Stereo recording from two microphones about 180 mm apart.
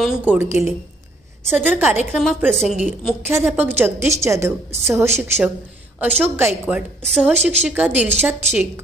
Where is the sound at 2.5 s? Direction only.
5° left (ahead or behind).